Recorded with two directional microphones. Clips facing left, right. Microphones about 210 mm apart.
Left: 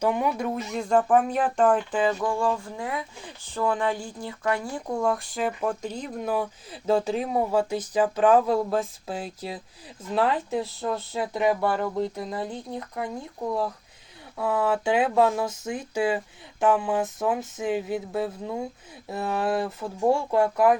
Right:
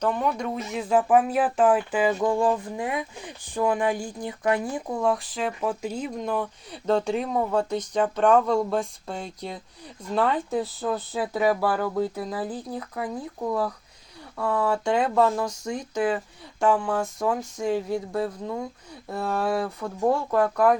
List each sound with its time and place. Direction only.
0.0 s speech: 10° left (ahead or behind); by 2.1 s 10° right (ahead or behind)
2.2 s speech: 20° right (ahead or behind)
4.9 s speech: centre (ahead or behind)
6.1 s speech: 5° left (ahead or behind)